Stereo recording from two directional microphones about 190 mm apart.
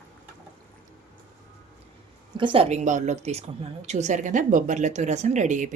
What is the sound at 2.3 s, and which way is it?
A woman's voice, 25° right (ahead or behind).